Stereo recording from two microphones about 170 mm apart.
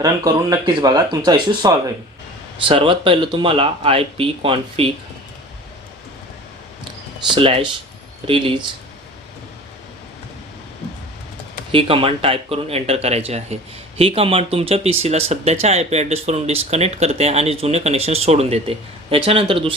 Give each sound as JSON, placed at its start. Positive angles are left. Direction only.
{"t": 0.0, "sound": "speech", "side_deg": -20}
{"t": 7.3, "sound": "speech", "side_deg": -35}
{"t": 11.7, "sound": "speech", "side_deg": -30}